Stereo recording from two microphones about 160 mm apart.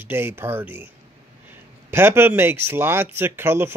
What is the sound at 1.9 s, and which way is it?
Speech, 15° right (ahead or behind).